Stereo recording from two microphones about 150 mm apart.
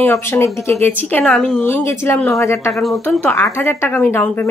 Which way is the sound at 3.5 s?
15° left (ahead or behind).